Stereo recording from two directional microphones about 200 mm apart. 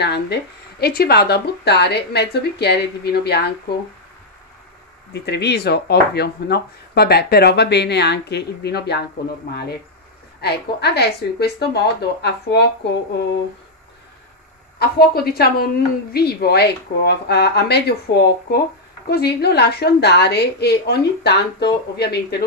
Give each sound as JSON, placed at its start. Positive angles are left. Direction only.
{"t": 0.0, "sound": "speech", "side_deg": 55}
{"t": 5.1, "sound": "speech", "side_deg": 55}
{"t": 10.4, "sound": "speech", "side_deg": 55}
{"t": 14.8, "sound": "a woman's voice", "side_deg": 50}